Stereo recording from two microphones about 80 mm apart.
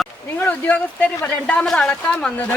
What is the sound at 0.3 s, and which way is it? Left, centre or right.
Speech, left.